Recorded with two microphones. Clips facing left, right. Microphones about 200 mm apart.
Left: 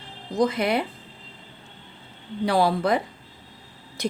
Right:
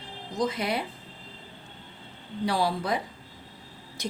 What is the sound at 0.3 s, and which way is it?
Speech, 60° left (ahead or behind).